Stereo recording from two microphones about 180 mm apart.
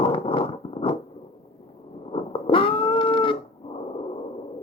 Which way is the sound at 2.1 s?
30° left (ahead or behind).